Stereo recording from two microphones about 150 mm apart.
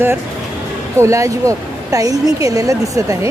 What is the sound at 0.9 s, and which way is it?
Speech, 20° right (ahead or behind).